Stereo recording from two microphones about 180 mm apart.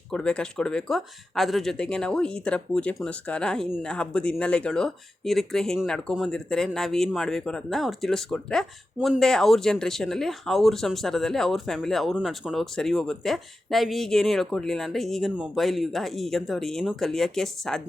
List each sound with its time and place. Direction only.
0.1 s speech: 5° left (ahead or behind)